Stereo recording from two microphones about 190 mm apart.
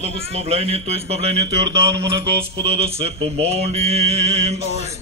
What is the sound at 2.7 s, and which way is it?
A man's voice, 30° right (ahead or behind).